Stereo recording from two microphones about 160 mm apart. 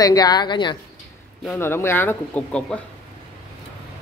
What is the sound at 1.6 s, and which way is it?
Speech, 15° left (ahead or behind).